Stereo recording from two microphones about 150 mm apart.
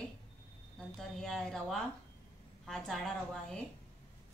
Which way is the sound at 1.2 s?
5° left (ahead or behind).